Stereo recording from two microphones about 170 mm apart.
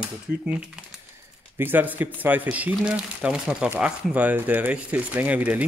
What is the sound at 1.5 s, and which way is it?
Speech, 10° right (ahead or behind).